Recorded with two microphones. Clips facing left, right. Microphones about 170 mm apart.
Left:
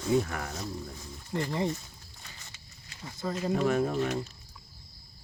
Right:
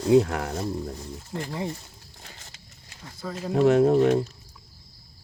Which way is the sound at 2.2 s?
50° right (ahead or behind).